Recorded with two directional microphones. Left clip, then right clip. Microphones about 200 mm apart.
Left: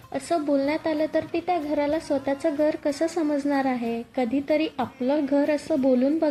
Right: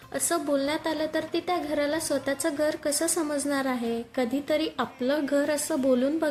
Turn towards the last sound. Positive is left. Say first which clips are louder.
# left 2 dB
turn(degrees=0)  # may be behind; listen again after turning